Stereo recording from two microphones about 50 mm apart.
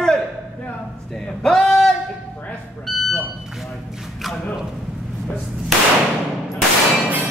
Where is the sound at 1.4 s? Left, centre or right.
Centre.